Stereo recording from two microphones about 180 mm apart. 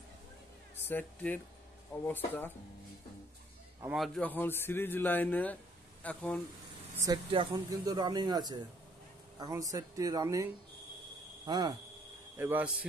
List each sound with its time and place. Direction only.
0.8 s speech: 10° left (ahead or behind)
3.9 s speech: centre (ahead or behind)
7.1 s speech: 25° right (ahead or behind)
12.4 s a man's voice: 10° right (ahead or behind)